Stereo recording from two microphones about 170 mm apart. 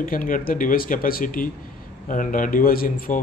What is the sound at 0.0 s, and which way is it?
Speech, 55° left (ahead or behind).